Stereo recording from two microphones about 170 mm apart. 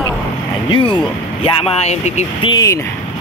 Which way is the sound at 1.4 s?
35° left (ahead or behind).